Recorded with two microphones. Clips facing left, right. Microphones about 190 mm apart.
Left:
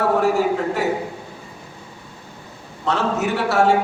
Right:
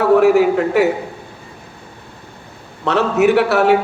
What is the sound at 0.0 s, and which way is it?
Speech, 65° right (ahead or behind).